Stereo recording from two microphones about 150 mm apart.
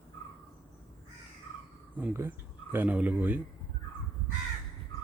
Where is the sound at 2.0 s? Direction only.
15° right (ahead or behind).